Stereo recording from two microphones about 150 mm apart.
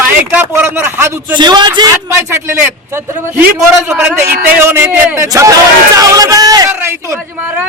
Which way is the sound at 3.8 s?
15° right (ahead or behind).